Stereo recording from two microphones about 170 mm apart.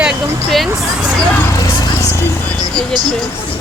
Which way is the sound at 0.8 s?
Centre (ahead or behind).